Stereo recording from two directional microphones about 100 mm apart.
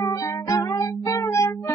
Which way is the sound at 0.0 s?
35° left (ahead or behind).